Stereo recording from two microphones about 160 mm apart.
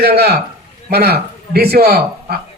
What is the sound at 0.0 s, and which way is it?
A man's voice, 80° right.